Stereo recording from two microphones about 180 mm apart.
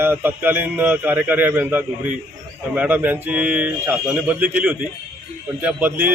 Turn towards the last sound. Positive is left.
turn(degrees=-10)  # may be behind; listen again after turning